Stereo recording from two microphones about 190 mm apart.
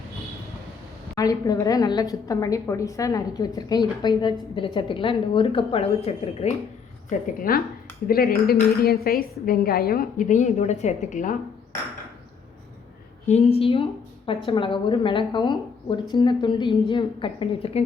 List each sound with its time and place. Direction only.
1.1 s a woman's voice: 20° left (ahead or behind)
7.5 s speech: 50° left (ahead or behind)
13.2 s a woman's voice: 35° left (ahead or behind)